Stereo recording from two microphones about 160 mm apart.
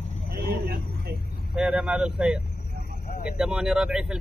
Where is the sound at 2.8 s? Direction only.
70° left (ahead or behind).